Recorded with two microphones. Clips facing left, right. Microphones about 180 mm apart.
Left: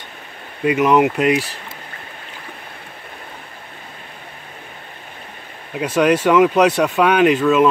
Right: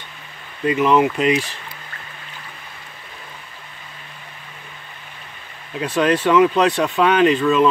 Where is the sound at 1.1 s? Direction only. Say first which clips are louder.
Left 1 dB; 60° left (ahead or behind).